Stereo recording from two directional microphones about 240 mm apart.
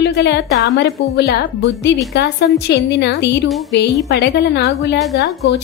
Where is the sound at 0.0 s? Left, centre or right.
Left.